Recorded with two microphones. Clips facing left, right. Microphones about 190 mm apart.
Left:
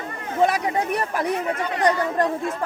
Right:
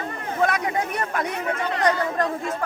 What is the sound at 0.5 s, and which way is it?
Chatter, 35° left (ahead or behind).